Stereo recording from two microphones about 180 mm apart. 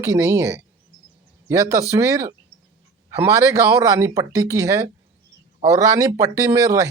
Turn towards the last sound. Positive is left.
turn(degrees=-15)  # may be behind; listen again after turning